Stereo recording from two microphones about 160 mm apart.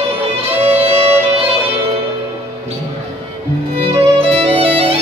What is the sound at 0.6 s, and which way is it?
Music, 40° right (ahead or behind).